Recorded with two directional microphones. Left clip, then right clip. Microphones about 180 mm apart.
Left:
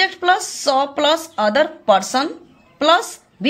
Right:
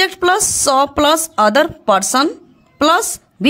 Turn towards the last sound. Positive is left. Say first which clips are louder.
# right 2 dB
turn(degrees=-40)  # may be behind; listen again after turning